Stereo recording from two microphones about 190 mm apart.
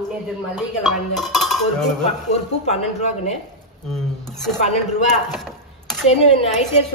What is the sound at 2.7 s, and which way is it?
Speech, 35° left (ahead or behind).